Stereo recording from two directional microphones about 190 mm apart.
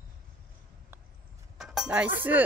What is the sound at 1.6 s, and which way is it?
Music, 5° right (ahead or behind).